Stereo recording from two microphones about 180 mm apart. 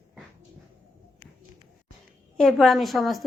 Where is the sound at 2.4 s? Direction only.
Centre (ahead or behind).